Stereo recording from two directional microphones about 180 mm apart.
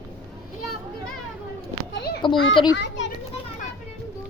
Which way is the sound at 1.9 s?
65° left (ahead or behind).